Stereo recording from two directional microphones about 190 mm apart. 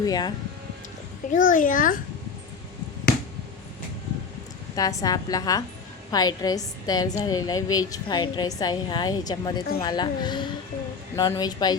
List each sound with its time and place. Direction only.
0.0 s a woman's voice: 20° left (ahead or behind)
1.3 s a child's voice: 45° left (ahead or behind)
4.7 s a woman's voice: 20° left (ahead or behind)